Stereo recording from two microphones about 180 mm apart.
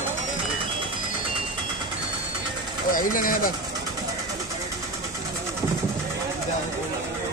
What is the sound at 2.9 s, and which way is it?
Speech, 50° left (ahead or behind).